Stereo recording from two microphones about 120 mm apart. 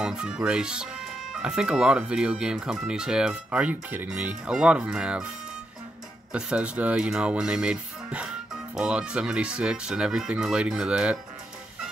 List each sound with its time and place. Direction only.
0.0 s speech: 5° right (ahead or behind)
6.3 s speech: 10° right (ahead or behind)